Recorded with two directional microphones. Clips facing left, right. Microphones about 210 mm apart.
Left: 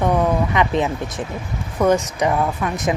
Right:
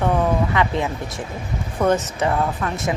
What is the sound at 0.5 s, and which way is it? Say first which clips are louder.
Speech: left 2 dB; 20° left (ahead or behind).